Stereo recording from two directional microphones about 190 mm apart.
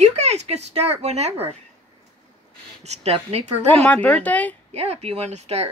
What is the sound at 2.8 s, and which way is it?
Speech, 35° right (ahead or behind).